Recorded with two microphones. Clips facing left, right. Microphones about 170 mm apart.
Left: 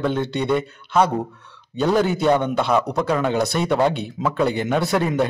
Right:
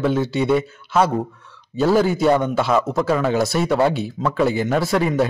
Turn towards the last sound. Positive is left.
turn(degrees=0)  # may be behind; listen again after turning